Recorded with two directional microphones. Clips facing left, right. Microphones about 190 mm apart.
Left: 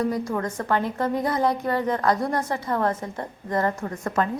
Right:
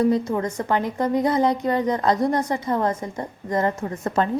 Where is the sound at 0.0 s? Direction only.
25° right (ahead or behind).